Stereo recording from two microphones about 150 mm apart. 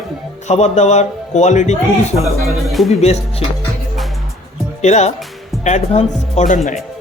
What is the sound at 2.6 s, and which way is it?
Speech, centre (ahead or behind).